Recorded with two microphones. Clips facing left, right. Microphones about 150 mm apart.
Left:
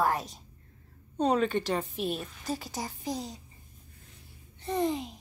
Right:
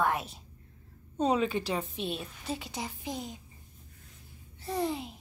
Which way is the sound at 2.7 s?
40° left (ahead or behind).